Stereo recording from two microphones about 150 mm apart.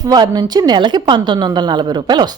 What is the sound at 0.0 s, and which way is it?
A woman's voice, 25° right (ahead or behind).